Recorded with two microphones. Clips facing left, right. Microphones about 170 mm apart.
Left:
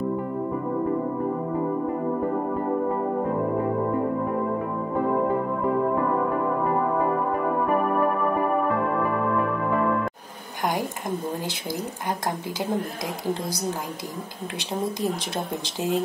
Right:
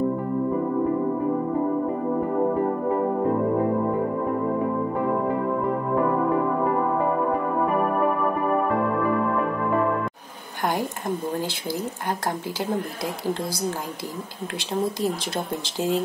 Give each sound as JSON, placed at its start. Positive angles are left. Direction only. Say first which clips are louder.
{"t": 7.6, "sound": "keyboard", "louder": "even", "side_deg": 0}
{"t": 12.1, "sound": "speech", "louder": "even", "side_deg": 15}
{"t": 14.7, "sound": "speech", "louder": "right 2 dB", "side_deg": 15}